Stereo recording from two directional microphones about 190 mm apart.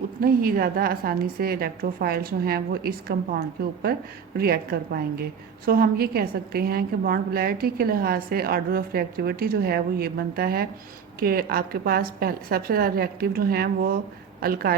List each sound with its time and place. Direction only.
0.2 s a woman's voice: 50° right (ahead or behind)
4.4 s a woman's voice: 50° right (ahead or behind)